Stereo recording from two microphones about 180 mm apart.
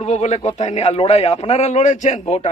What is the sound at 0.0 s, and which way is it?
A man's voice, 40° left (ahead or behind).